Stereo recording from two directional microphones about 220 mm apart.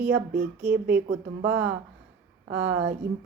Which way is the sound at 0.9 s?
35° right (ahead or behind).